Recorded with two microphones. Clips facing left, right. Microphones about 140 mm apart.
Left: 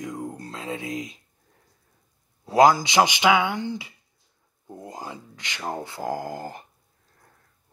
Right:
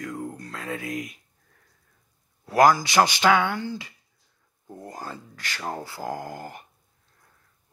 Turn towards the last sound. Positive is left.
turn(degrees=30)  # may be behind; listen again after turning